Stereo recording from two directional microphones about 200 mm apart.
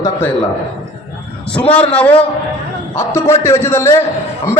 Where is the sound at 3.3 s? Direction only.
15° left (ahead or behind).